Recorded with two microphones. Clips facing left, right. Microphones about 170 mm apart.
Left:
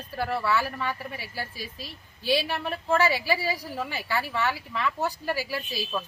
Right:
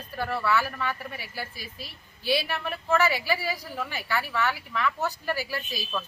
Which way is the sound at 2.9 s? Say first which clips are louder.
Left 1 dB; 10° left (ahead or behind).